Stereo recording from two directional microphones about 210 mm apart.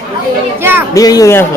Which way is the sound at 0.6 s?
10° right (ahead or behind).